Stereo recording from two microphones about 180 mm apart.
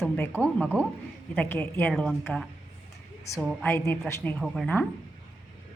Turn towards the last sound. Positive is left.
turn(degrees=5)  # may be behind; listen again after turning